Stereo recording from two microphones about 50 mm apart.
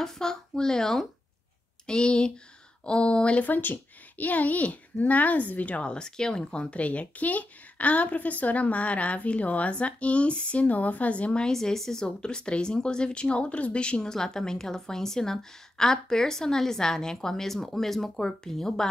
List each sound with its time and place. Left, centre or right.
0.0 s a sound: centre
1.9 s a woman's voice: centre
3.4 s a woman's voice: left
5.8 s speech: centre
11.5 s a woman's voice: centre